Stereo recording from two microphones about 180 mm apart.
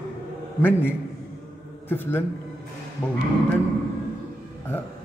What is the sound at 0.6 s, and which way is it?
A man's voice, 10° left (ahead or behind).